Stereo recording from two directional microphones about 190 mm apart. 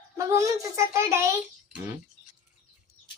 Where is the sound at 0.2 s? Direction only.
15° right (ahead or behind).